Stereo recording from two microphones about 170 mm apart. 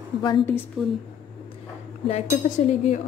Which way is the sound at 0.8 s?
Centre (ahead or behind).